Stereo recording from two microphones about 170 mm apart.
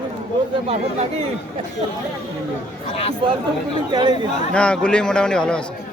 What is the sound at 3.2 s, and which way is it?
Speech, 30° right (ahead or behind).